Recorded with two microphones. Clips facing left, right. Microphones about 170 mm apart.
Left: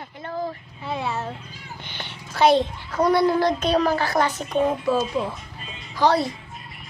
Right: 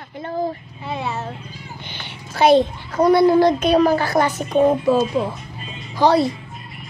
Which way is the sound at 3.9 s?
50° right (ahead or behind).